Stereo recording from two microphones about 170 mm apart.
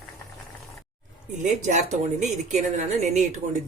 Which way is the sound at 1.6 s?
45° right (ahead or behind).